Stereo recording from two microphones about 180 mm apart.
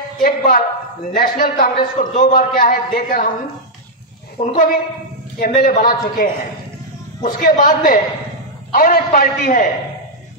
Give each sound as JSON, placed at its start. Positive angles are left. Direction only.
{"t": 0.2, "sound": "a man's voice", "side_deg": 50}
{"t": 4.5, "sound": "a man's voice", "side_deg": 50}